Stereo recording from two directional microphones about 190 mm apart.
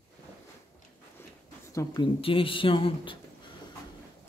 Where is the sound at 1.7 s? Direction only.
20° left (ahead or behind).